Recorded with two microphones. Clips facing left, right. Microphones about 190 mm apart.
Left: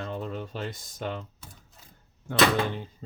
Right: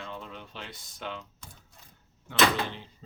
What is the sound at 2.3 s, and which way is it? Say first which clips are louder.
Speech: left 3 dB; 45° left (ahead or behind).